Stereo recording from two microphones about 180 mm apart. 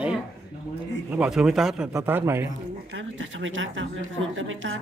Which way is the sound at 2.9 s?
90° right.